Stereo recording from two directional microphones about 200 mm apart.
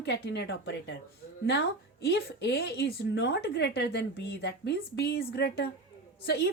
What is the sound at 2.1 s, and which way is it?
A woman's voice, 55° left (ahead or behind).